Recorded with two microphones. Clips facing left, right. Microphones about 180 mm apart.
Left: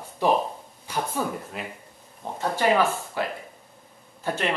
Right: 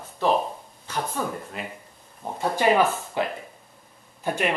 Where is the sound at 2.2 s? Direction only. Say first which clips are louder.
Right 1 dB; 10° right (ahead or behind).